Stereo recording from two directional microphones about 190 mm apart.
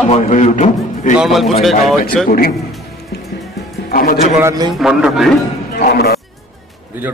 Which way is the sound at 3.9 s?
50° left (ahead or behind).